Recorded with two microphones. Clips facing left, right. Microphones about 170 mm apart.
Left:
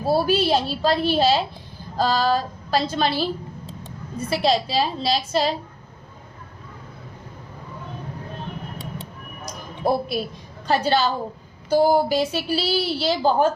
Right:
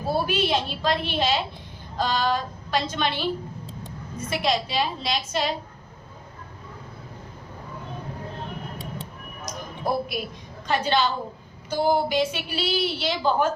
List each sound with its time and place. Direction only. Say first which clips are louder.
0.0 s a woman's voice: left 5 dB; 35° left (ahead or behind)
4.3 s a woman's voice: left 4 dB; 35° left (ahead or behind)
9.5 s a sound: left 5 dB; 30° left (ahead or behind)
10.7 s a woman's voice: left 3 dB; 40° left (ahead or behind)